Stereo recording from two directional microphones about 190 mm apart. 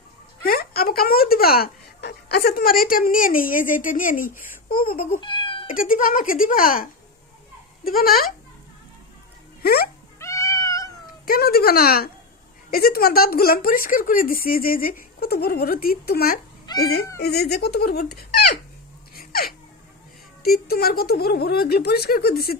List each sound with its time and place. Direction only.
0.4 s speech: 50° left (ahead or behind)
5.2 s cat: 25° left (ahead or behind)
5.7 s speech: 45° left (ahead or behind)
7.9 s speech: 50° left (ahead or behind)
9.6 s speech: 50° left (ahead or behind)
10.2 s cat: 15° left (ahead or behind)
11.3 s speech: 50° left (ahead or behind)
16.6 s cat: 20° left (ahead or behind)
17.2 s speech: 55° left (ahead or behind)
19.1 s laughter: 50° left (ahead or behind)
20.4 s speech: 55° left (ahead or behind)